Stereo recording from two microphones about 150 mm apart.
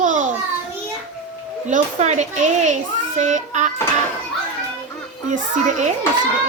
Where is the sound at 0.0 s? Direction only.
55° right (ahead or behind).